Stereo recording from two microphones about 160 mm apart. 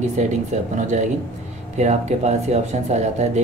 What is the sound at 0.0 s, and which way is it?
Speech, 45° right (ahead or behind).